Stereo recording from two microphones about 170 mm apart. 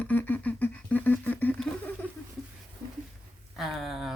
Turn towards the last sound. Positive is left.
turn(degrees=0)  # may be behind; listen again after turning